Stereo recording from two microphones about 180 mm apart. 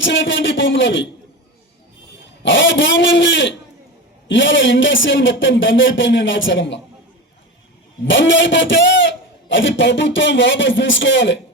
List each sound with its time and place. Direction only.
0.0 s a man's voice: 90° left
2.4 s a man's voice: 90° left
8.0 s a man's voice: 90° left